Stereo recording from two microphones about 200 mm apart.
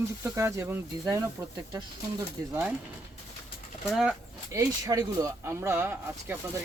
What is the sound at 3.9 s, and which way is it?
Speech, 5° right (ahead or behind).